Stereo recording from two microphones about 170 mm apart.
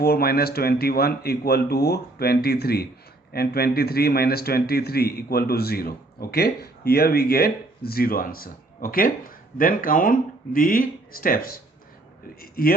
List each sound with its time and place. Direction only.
0.0 s speech: 65° left (ahead or behind)